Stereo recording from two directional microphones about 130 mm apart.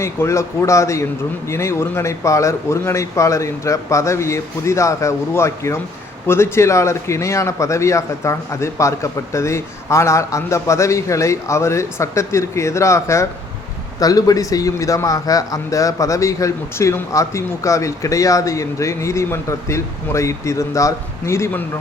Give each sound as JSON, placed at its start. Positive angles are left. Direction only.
{"t": 0.0, "sound": "a man's voice", "side_deg": 20}